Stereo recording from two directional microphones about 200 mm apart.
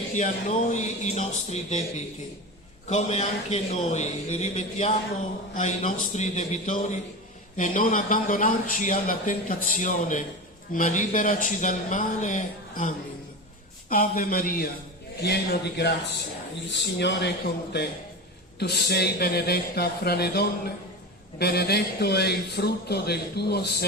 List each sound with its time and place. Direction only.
0.1 s a man's voice: 40° left (ahead or behind)
2.9 s a man's voice: 35° left (ahead or behind)
13.9 s a man's voice: 45° left (ahead or behind)
16.6 s a man's voice: 60° left (ahead or behind)